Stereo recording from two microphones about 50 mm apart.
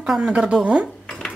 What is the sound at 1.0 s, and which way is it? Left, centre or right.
Dog, centre.